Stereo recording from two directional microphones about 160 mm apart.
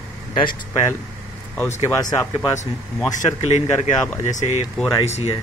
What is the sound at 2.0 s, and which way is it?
Speech, 25° left (ahead or behind).